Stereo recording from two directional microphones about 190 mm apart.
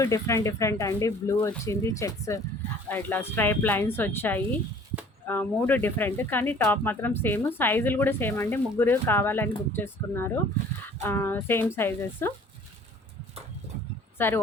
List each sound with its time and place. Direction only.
0.0 s speech: 15° left (ahead or behind)
14.2 s speech: 10° left (ahead or behind)